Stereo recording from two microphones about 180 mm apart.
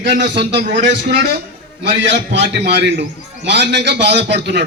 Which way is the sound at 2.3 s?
80° right.